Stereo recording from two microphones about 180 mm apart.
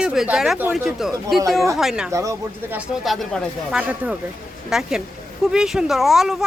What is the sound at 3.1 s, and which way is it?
Speech, centre (ahead or behind).